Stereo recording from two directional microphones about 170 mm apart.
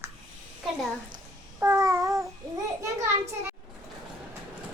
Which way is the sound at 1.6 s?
15° right (ahead or behind).